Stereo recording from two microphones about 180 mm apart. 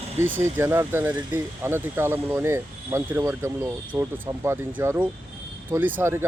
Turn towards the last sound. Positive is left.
turn(degrees=-10)  # may be behind; listen again after turning